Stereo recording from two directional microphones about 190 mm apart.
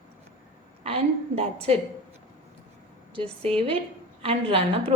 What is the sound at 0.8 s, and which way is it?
Speech, 30° right (ahead or behind).